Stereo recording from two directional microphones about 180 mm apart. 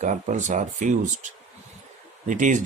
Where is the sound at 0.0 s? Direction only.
40° right (ahead or behind).